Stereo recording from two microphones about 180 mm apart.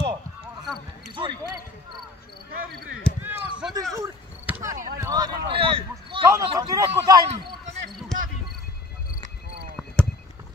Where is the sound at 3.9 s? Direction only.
15° right (ahead or behind).